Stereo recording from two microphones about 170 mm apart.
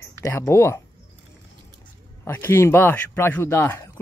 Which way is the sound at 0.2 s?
15° left (ahead or behind).